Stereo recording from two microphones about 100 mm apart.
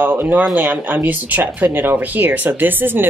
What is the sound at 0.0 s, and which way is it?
Speech, 20° right (ahead or behind).